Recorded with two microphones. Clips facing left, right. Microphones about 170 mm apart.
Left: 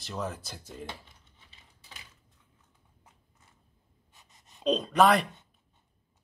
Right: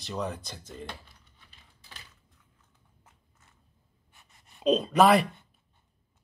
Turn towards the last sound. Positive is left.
turn(degrees=-5)  # may be behind; listen again after turning